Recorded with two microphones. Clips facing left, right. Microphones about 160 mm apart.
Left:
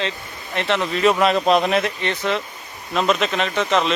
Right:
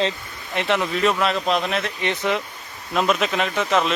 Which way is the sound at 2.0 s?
15° right (ahead or behind).